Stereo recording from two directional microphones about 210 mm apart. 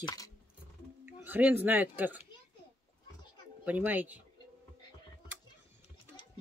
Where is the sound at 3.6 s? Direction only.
10° right (ahead or behind).